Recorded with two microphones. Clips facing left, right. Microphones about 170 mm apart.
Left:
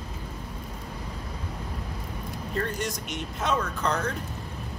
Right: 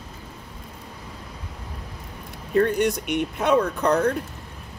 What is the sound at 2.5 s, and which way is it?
Speech, 60° right (ahead or behind).